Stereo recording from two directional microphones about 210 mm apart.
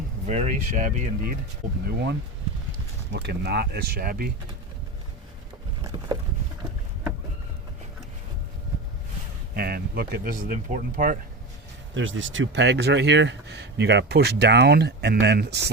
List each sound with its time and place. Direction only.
0.3 s speech: 35° right (ahead or behind)
9.6 s speech: 45° right (ahead or behind)
11.9 s speech: 65° right (ahead or behind)